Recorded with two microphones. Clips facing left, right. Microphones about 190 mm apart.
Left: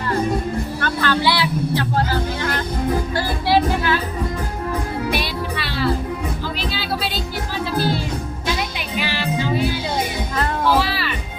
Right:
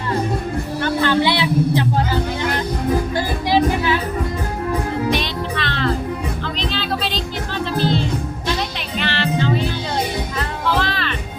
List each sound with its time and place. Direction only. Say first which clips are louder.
0.8 s speech: right 5 dB; 20° right (ahead or behind)
3.2 s music: right 1 dB; 15° right (ahead or behind)
5.1 s music: right 2 dB; 10° left (ahead or behind)
10.8 s music: left 1 dB; 10° left (ahead or behind)